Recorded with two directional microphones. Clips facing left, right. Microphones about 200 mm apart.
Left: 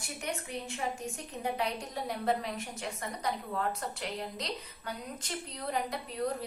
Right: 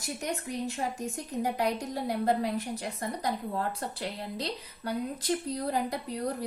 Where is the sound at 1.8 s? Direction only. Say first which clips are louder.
Right 6 dB; 35° right (ahead or behind).